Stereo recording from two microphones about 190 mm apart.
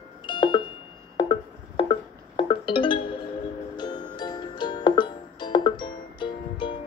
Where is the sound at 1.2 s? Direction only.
25° left (ahead or behind).